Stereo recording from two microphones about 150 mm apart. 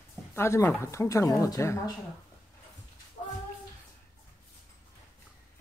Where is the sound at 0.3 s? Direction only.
15° left (ahead or behind).